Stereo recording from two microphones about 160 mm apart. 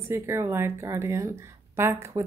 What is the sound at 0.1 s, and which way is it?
A woman's voice, 15° right (ahead or behind).